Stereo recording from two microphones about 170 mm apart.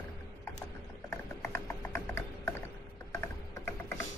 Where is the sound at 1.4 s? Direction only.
15° left (ahead or behind).